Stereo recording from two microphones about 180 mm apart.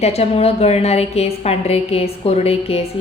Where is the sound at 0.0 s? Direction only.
35° left (ahead or behind).